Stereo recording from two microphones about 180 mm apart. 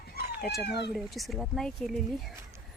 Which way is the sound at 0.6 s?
65° left (ahead or behind).